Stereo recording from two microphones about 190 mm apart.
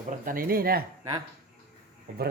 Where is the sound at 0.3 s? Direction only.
50° right (ahead or behind).